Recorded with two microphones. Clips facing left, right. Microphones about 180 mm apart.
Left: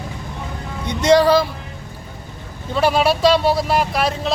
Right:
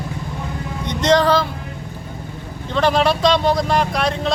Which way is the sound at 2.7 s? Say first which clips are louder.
Even; 5° left (ahead or behind).